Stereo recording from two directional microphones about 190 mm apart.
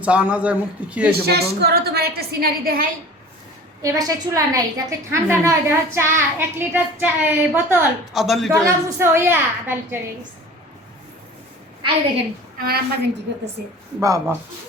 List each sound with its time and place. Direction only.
0.0 s a woman's voice: 5° right (ahead or behind)
1.1 s a woman's voice: 55° right (ahead or behind)
3.8 s a woman's voice: 20° right (ahead or behind); by 8.6 s centre (ahead or behind)
8.6 s a woman's voice: 15° right (ahead or behind)
12.6 s a woman's voice: 55° right (ahead or behind)
13.3 s a woman's voice: 70° right (ahead or behind)
14.0 s a woman's voice: 15° right (ahead or behind)